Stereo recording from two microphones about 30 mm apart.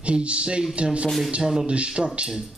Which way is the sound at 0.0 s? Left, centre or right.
Right.